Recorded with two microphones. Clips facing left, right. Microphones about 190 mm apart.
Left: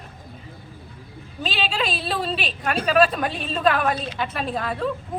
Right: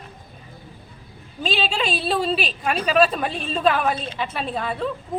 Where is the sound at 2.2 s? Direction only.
Centre (ahead or behind).